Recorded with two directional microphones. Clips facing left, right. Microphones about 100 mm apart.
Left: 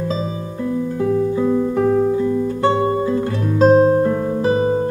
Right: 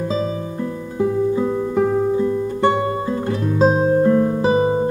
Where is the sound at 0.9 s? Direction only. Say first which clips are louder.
Right 2 dB; 15° right (ahead or behind).